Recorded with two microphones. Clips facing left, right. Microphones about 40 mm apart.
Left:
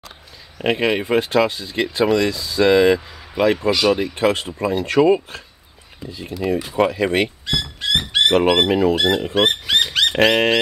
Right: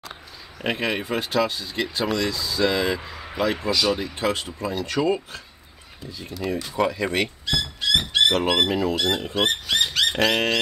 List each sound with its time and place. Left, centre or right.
0.6 s speech: centre
3.6 s speech: left
6.2 s speech: left
9.3 s speech: left